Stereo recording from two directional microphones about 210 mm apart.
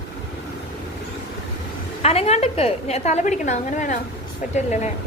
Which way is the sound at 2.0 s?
30° left (ahead or behind).